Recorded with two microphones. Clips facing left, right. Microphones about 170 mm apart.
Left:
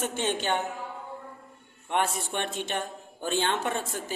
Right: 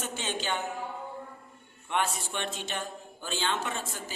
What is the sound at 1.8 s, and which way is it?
A man's voice, 50° left (ahead or behind).